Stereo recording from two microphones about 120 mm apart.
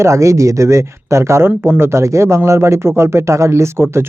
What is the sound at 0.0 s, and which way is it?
Speech, 25° right (ahead or behind).